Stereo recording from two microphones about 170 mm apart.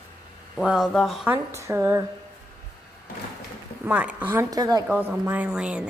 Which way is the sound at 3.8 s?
10° right (ahead or behind).